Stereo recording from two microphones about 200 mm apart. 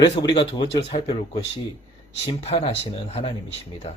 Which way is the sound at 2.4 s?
30° left (ahead or behind).